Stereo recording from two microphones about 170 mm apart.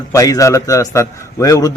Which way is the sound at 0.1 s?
20° left (ahead or behind).